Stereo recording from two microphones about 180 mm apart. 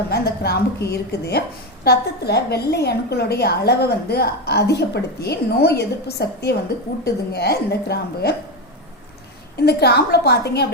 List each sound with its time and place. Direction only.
0.1 s a woman's voice: 65° left (ahead or behind)
9.6 s a woman's voice: 65° left (ahead or behind)